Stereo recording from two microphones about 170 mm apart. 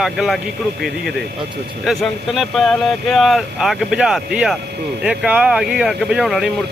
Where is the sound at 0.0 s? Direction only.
Centre (ahead or behind).